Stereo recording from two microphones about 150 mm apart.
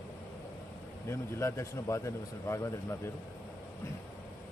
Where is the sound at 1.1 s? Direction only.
20° left (ahead or behind).